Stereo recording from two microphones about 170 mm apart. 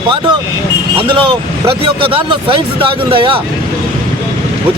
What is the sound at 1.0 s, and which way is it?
Speech, 30° right (ahead or behind).